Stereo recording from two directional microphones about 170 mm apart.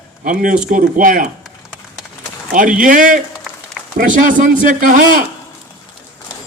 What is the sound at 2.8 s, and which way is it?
A man's voice, 50° right (ahead or behind).